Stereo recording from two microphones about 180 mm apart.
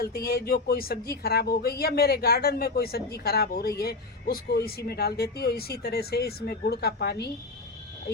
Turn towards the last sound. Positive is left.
turn(degrees=65)  # may be behind; listen again after turning